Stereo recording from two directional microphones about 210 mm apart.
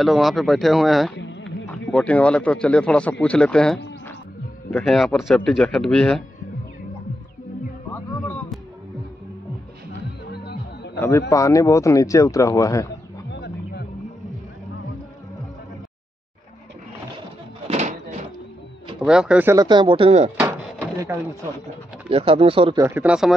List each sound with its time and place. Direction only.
0.0 s speech: centre (ahead or behind)
1.1 s a sound: 60° left (ahead or behind)
1.9 s speech: 5° left (ahead or behind)
10.3 s music: 50° left (ahead or behind)
11.0 s speech: 10° left (ahead or behind)
13.3 s music: 55° left (ahead or behind)
17.6 s a sound: 30° right (ahead or behind)
18.9 s speech: 5° right (ahead or behind); by 20.2 s 25° right (ahead or behind)
20.3 s drawer open or close: 10° right (ahead or behind)
22.1 s speech: 25° right (ahead or behind)
22.8 s speech: 5° right (ahead or behind)